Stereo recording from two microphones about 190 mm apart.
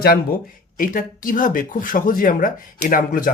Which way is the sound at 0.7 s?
45° left (ahead or behind).